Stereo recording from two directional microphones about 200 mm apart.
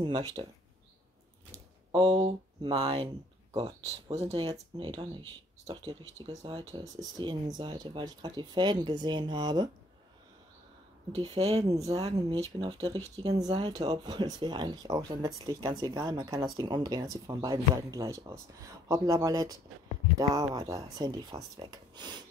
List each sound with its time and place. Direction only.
0.0 s speech: 20° right (ahead or behind)
1.9 s speech: 25° right (ahead or behind)
4.3 s speech: 25° right (ahead or behind)
11.1 s speech: 30° right (ahead or behind)
11.7 s speech: 15° right (ahead or behind)